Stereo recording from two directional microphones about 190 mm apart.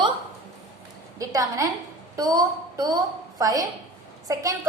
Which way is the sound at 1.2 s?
20° right (ahead or behind).